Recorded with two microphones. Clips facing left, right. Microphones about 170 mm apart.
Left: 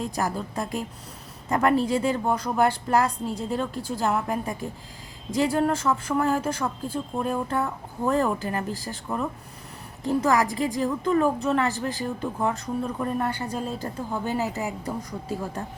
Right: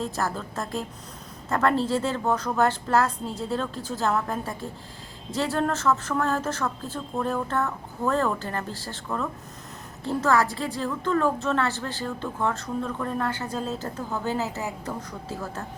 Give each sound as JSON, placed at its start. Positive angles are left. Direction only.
{"t": 0.0, "sound": "speech", "side_deg": 15}